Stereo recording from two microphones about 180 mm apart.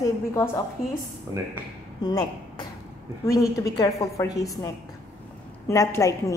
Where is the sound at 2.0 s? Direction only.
20° left (ahead or behind).